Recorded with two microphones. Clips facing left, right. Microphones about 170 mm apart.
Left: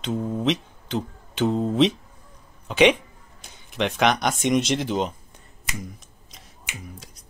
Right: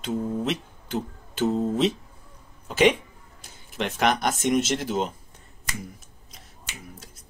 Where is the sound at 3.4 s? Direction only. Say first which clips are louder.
Left 4 dB; 5° right (ahead or behind).